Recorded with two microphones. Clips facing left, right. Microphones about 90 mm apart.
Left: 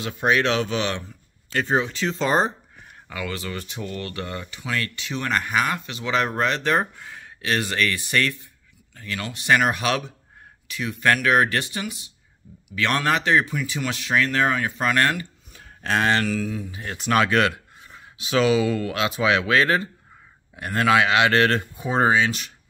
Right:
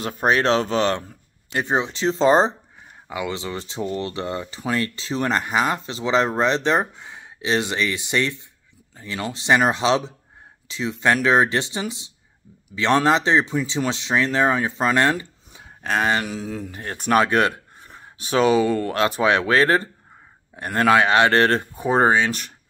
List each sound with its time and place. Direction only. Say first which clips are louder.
0.0 s speech: right 2 dB; 40° right (ahead or behind)
1.5 s speech: even; 20° right (ahead or behind)
15.8 s speech: even; 5° right (ahead or behind)
16.6 s speech: right 2 dB; 45° right (ahead or behind)